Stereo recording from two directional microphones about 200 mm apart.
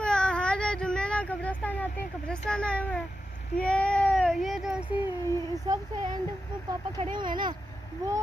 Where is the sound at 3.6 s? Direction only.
5° left (ahead or behind).